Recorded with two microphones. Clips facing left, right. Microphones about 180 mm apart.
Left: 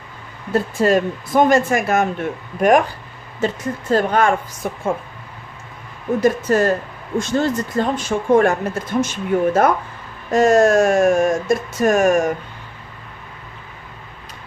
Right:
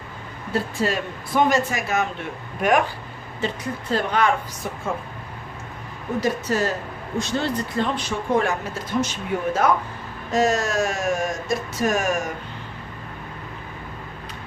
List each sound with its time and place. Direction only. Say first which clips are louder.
0.5 s speech: left 8 dB; 50° left (ahead or behind)
6.1 s speech: left 6 dB; 50° left (ahead or behind)